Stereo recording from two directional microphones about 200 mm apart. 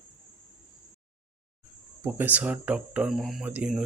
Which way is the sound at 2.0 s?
10° right (ahead or behind).